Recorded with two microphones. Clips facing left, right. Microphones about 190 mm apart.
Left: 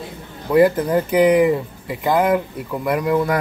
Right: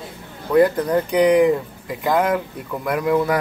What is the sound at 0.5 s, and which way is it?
Speech, 5° left (ahead or behind).